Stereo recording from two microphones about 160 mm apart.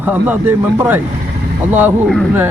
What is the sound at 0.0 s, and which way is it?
A man's voice, 10° right (ahead or behind).